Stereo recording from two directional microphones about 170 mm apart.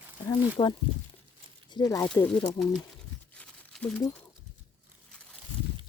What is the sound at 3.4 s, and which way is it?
Crumpling, 5° left (ahead or behind).